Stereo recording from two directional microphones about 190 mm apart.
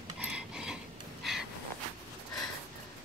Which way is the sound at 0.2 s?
5° right (ahead or behind).